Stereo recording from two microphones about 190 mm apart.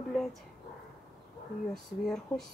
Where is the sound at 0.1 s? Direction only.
Centre (ahead or behind).